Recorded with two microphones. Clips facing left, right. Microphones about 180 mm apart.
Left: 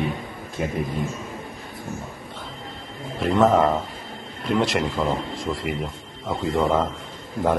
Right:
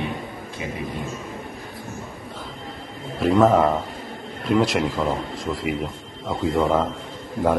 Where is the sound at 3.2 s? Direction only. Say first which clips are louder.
Right 1 dB; centre (ahead or behind).